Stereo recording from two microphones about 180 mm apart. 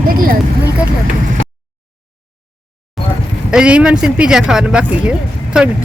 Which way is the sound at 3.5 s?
5° right (ahead or behind).